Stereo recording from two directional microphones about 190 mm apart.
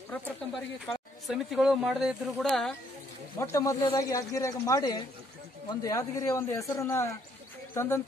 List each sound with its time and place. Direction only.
0.8 s speech: centre (ahead or behind)
3.3 s speech: 15° left (ahead or behind)